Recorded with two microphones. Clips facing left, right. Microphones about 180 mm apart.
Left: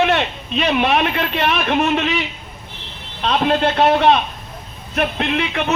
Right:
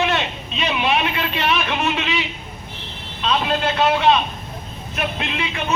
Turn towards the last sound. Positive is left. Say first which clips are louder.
# left 6 dB
turn(degrees=55)  # may be behind; listen again after turning